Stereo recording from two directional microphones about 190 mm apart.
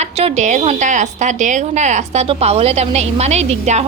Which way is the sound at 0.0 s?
35° right (ahead or behind).